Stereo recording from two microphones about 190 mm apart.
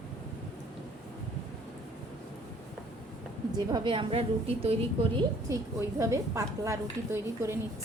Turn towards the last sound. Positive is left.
turn(degrees=-15)  # may be behind; listen again after turning